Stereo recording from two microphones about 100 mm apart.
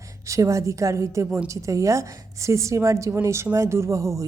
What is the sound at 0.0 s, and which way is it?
A woman's voice, 35° right (ahead or behind).